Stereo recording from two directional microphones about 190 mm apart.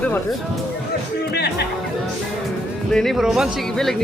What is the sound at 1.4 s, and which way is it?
Music, 60° left (ahead or behind).